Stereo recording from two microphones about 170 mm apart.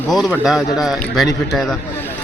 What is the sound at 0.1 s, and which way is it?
Speech, centre (ahead or behind).